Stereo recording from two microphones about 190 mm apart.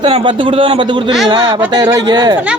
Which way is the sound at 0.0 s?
25° right (ahead or behind).